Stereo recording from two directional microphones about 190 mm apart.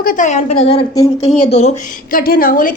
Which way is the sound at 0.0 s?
45° left (ahead or behind).